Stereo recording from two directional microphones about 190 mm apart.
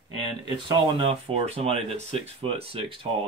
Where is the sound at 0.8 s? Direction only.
25° right (ahead or behind).